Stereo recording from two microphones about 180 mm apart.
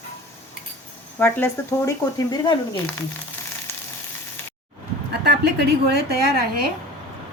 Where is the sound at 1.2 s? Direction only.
10° left (ahead or behind).